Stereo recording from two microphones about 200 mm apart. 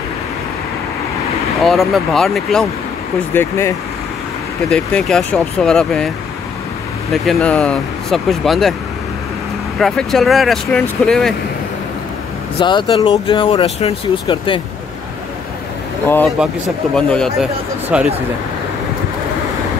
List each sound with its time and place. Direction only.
1.6 s speech: centre (ahead or behind)
3.3 s speech: 15° left (ahead or behind)
9.8 s speech: centre (ahead or behind)
12.5 s speech: 20° left (ahead or behind)
16.4 s speech: 5° right (ahead or behind)